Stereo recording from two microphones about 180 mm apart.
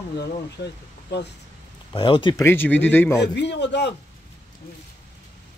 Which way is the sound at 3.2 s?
70° left (ahead or behind).